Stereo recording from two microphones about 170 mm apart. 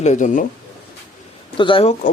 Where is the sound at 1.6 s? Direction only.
30° left (ahead or behind).